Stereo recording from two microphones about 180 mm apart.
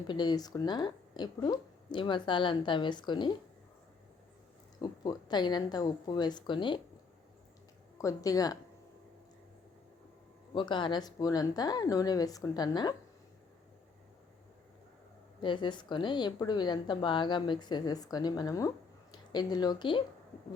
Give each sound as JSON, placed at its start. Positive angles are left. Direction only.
{"t": 0.1, "sound": "a woman's voice", "side_deg": 25}
{"t": 4.8, "sound": "a woman's voice", "side_deg": 20}
{"t": 7.9, "sound": "a woman's voice", "side_deg": 20}
{"t": 10.5, "sound": "a woman's voice", "side_deg": 25}
{"t": 15.4, "sound": "a woman's voice", "side_deg": 25}